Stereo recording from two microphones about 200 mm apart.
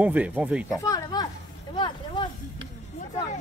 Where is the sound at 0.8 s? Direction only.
15° left (ahead or behind).